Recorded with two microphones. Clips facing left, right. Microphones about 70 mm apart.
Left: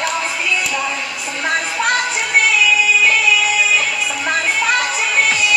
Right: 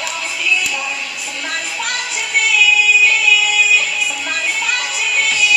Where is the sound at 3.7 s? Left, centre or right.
Left.